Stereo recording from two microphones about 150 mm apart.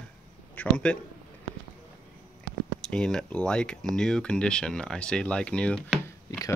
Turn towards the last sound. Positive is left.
turn(degrees=25)  # may be behind; listen again after turning